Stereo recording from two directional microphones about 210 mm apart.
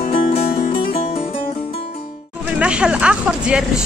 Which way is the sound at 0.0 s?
45° left (ahead or behind).